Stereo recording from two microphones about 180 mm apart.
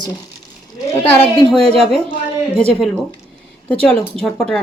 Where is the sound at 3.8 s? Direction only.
5° left (ahead or behind).